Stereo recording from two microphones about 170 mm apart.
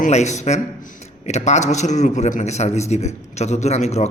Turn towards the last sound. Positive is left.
turn(degrees=40)  # may be behind; listen again after turning